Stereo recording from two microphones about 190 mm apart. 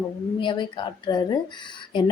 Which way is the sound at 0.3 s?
25° left (ahead or behind).